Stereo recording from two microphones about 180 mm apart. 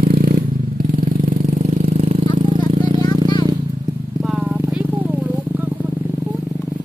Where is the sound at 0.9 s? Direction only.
50° right (ahead or behind).